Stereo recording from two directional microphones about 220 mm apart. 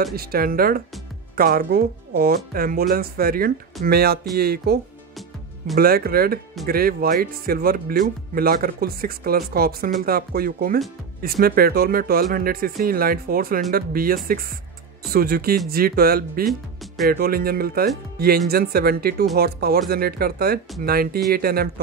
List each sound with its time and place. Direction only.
0.1 s speech: 45° right (ahead or behind)
5.8 s speech: 45° right (ahead or behind)
16.4 s speech: centre (ahead or behind)
17.1 s speech: 45° right (ahead or behind)